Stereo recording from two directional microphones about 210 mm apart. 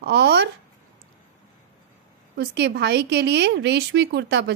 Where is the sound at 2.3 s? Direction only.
55° right (ahead or behind).